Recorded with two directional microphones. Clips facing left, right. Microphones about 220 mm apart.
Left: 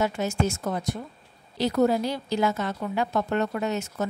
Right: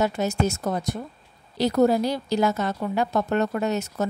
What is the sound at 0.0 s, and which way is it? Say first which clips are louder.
A woman's voice: right 2 dB; 40° right (ahead or behind).